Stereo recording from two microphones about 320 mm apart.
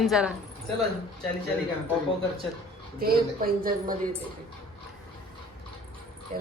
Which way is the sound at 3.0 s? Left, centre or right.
Right.